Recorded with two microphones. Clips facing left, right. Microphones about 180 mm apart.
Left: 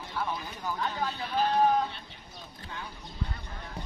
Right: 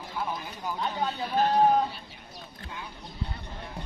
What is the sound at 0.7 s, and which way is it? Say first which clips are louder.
Speech: right 2 dB; 20° right (ahead or behind).